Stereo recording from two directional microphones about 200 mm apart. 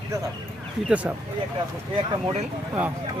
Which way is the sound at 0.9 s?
5° right (ahead or behind).